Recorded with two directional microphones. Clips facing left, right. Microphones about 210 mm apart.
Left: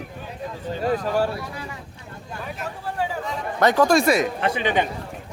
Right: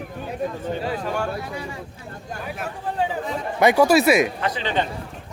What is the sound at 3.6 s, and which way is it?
Speech, 10° right (ahead or behind).